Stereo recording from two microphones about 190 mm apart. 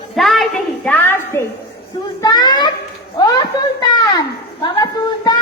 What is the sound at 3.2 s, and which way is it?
A woman's voice, 20° left (ahead or behind).